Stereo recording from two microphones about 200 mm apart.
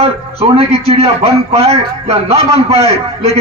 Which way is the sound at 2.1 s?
30° right (ahead or behind).